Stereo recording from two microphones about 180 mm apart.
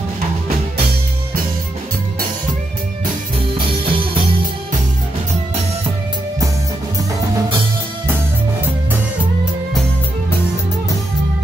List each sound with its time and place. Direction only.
3.8 s music: 30° right (ahead or behind)